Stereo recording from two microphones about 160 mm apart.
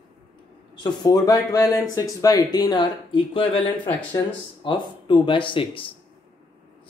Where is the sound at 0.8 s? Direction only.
25° left (ahead or behind).